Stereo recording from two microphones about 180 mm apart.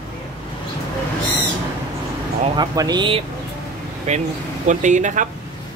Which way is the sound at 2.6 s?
25° right (ahead or behind).